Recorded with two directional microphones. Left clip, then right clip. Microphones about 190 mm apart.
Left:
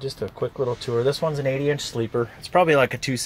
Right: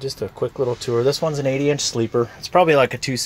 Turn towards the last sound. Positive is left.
turn(degrees=-5)  # may be behind; listen again after turning